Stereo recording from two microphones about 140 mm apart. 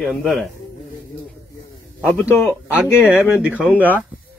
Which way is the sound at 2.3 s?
5° right (ahead or behind).